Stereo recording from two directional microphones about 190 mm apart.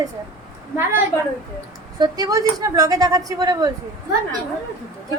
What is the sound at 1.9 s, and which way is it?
Speech, 20° right (ahead or behind).